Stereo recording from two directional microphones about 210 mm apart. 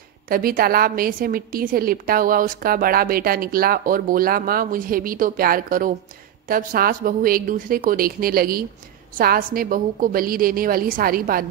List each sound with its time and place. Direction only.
0.3 s a woman's voice: 45° right (ahead or behind)